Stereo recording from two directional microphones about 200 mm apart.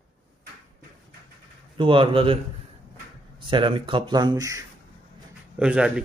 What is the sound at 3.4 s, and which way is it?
A man's voice, 25° right (ahead or behind).